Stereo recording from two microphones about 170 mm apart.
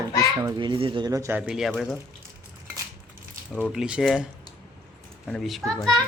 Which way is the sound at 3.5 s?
5° left (ahead or behind).